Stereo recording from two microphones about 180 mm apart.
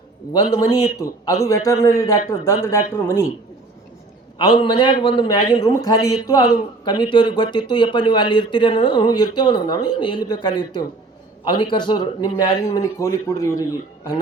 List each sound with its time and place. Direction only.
0.3 s a man's voice: 20° left (ahead or behind)
4.4 s a man's voice: 25° left (ahead or behind)